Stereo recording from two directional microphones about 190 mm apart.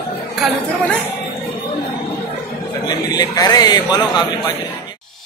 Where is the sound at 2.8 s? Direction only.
20° left (ahead or behind).